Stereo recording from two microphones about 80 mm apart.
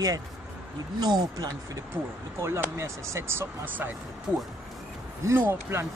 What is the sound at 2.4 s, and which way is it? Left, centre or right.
Speech, right.